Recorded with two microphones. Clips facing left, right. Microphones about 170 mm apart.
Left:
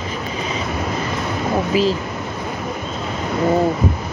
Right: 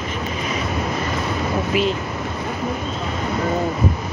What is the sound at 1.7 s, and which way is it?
Speech, 30° left (ahead or behind).